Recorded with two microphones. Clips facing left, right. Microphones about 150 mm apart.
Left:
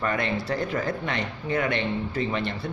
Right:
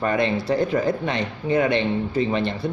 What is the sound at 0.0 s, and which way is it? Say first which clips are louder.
Speech: right 5 dB; 25° right (ahead or behind).